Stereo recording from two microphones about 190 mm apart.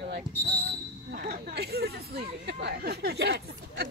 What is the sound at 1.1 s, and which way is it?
Speech, 50° right (ahead or behind).